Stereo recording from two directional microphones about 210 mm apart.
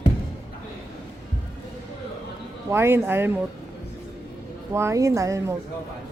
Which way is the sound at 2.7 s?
10° right (ahead or behind).